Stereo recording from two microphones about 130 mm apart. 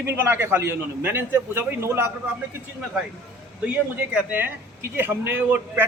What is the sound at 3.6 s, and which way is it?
Speech, 10° right (ahead or behind).